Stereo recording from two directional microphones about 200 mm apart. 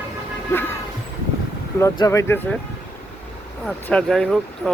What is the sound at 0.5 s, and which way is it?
Vehicle, 10° left (ahead or behind).